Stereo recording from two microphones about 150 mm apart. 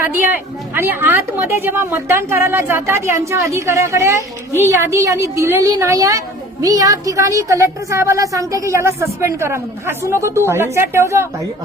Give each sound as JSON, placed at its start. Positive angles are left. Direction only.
{"t": 0.0, "sound": "a woman's voice", "side_deg": -15}